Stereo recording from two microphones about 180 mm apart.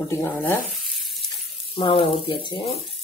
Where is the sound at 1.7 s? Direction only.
30° left (ahead or behind).